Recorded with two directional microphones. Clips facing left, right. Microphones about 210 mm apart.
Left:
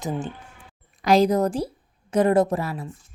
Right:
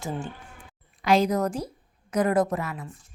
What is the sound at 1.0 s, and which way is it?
A woman's voice, 35° left (ahead or behind).